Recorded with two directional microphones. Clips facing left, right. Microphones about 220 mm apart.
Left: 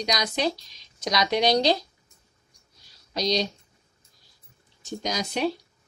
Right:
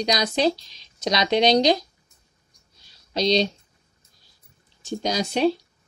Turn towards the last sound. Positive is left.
turn(degrees=-30)  # may be behind; listen again after turning